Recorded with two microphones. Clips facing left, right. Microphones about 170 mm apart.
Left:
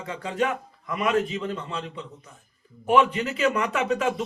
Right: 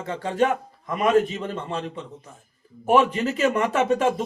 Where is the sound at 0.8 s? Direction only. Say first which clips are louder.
Right 4 dB; 40° right (ahead or behind).